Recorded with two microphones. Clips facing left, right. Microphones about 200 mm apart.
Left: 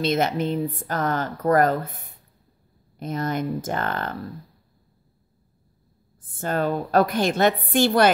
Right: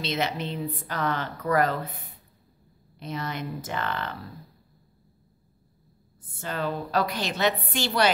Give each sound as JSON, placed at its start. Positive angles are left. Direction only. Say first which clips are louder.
{"t": 0.0, "sound": "speech", "louder": "left 7 dB", "side_deg": 50}
{"t": 3.0, "sound": "speech", "louder": "left 7 dB", "side_deg": 45}
{"t": 6.2, "sound": "speech", "louder": "left 6 dB", "side_deg": 50}